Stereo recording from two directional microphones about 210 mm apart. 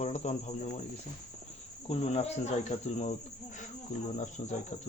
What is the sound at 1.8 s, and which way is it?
Speech, 30° left (ahead or behind).